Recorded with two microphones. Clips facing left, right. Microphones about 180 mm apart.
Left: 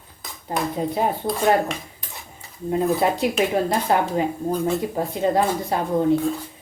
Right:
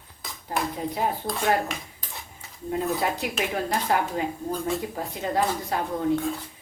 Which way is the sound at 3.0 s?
25° left (ahead or behind).